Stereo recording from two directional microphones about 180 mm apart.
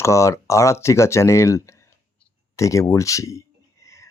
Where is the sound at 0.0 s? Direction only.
15° left (ahead or behind).